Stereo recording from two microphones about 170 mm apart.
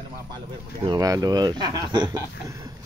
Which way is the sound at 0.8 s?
20° right (ahead or behind).